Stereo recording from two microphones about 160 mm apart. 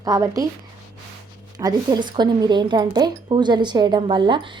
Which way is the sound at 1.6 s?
25° right (ahead or behind).